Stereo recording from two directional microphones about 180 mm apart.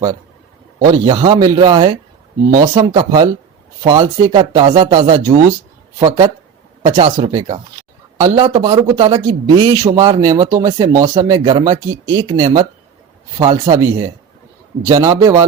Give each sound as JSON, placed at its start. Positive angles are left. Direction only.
{"t": 0.8, "sound": "a man's voice", "side_deg": -25}
{"t": 14.8, "sound": "a man's voice", "side_deg": -20}